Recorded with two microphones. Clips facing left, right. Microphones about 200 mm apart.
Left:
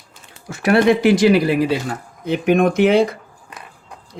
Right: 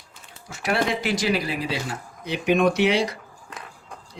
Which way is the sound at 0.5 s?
60° left (ahead or behind).